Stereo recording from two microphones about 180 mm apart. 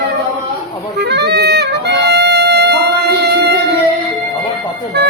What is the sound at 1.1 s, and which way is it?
Music, 70° right (ahead or behind).